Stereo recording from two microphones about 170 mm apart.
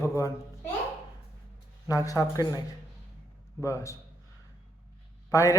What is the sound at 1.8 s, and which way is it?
Speech, 20° left (ahead or behind).